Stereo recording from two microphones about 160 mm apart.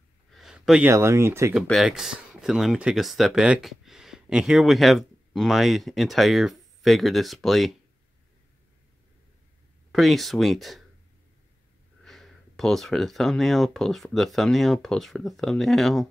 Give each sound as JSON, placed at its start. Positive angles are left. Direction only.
{"t": 0.3, "sound": "a sound", "side_deg": 0}
{"t": 0.9, "sound": "speech", "side_deg": -15}
{"t": 1.5, "sound": "speech", "side_deg": 0}
{"t": 9.9, "sound": "speech", "side_deg": 0}
{"t": 12.0, "sound": "speech", "side_deg": 0}